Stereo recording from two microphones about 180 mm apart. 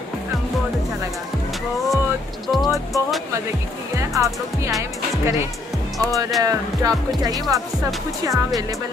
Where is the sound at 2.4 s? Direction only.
Centre (ahead or behind).